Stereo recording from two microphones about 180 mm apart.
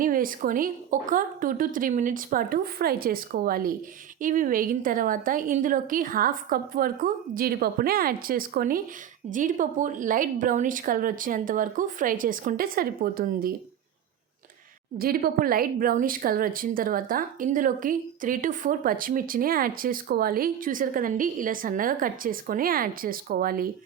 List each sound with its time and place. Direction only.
0.0 s a woman's voice: 50° right (ahead or behind)
14.9 s a woman's voice: 55° right (ahead or behind)